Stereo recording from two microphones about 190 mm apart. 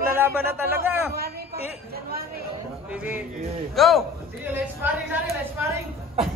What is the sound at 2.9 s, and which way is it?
Speech, 10° right (ahead or behind).